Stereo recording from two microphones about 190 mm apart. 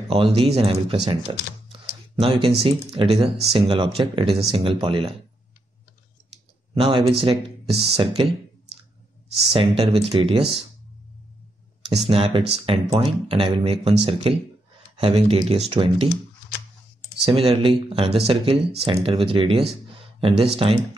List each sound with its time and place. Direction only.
0.1 s speech: 30° right (ahead or behind)
6.7 s speech: 25° right (ahead or behind)
9.5 s speech: 30° right (ahead or behind)
11.9 s speech: 30° right (ahead or behind)
17.2 s speech: 30° right (ahead or behind)